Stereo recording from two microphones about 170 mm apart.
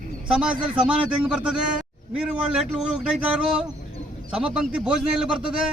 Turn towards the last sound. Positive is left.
turn(degrees=-5)  # may be behind; listen again after turning